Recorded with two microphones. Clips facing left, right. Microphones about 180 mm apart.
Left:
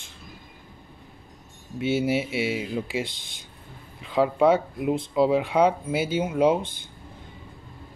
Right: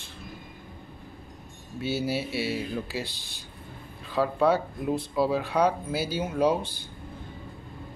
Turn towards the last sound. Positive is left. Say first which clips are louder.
# left 3 dB
turn(degrees=20)  # may be behind; listen again after turning